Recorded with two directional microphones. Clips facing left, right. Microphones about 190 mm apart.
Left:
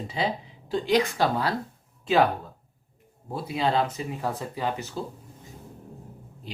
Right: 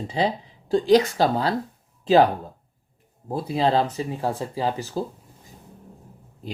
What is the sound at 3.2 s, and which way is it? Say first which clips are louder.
Speech: right 4 dB; 35° right (ahead or behind).